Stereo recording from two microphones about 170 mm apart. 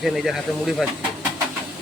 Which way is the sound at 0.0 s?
Centre (ahead or behind).